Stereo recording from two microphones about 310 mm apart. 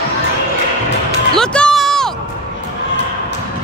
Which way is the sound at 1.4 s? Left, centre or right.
Centre.